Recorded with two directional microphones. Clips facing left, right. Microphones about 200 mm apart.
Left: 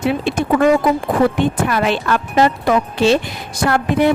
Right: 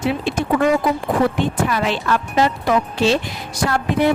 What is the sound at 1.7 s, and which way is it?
A woman's voice, 55° left (ahead or behind).